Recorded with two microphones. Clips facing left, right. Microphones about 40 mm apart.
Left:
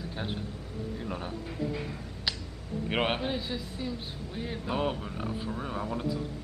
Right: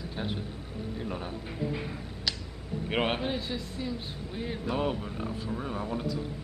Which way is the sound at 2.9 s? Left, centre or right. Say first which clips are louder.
Even; centre.